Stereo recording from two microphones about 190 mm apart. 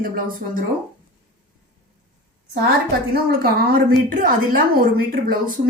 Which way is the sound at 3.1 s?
50° right (ahead or behind).